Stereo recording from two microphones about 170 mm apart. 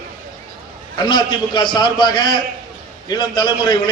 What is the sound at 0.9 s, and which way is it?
A man's voice, 25° left (ahead or behind).